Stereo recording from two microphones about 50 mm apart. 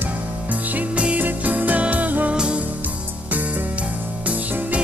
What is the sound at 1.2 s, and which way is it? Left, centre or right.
Music, right.